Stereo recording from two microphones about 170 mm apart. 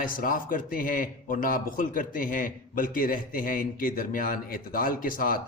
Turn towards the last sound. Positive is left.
turn(degrees=55)  # may be behind; listen again after turning